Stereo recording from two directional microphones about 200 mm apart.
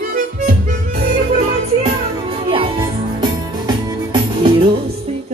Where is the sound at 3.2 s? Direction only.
20° right (ahead or behind).